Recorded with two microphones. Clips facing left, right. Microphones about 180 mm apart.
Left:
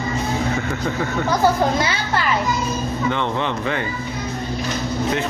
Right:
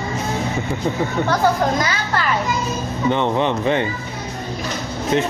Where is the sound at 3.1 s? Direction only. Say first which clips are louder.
Right 7 dB; 20° right (ahead or behind).